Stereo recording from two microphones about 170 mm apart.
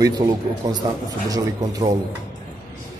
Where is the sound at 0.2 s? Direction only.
25° right (ahead or behind).